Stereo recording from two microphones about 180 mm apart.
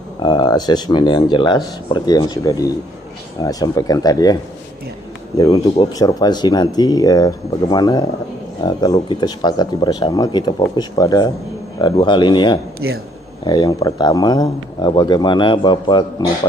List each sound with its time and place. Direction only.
0.2 s speech: 25° left (ahead or behind)
5.4 s speech: 20° left (ahead or behind)